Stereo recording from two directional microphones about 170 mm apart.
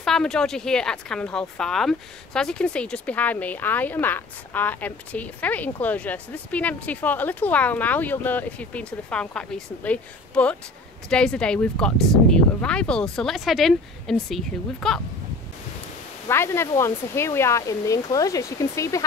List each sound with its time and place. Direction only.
0.0 s speech: 5° left (ahead or behind)
16.3 s speech: 15° left (ahead or behind)